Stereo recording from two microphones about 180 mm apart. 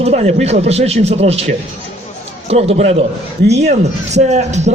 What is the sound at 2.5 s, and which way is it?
Speech, 35° right (ahead or behind).